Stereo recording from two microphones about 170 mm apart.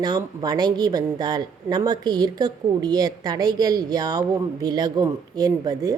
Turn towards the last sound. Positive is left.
turn(degrees=-20)  # may be behind; listen again after turning